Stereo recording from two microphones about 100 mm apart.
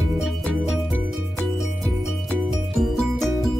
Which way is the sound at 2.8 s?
Centre (ahead or behind).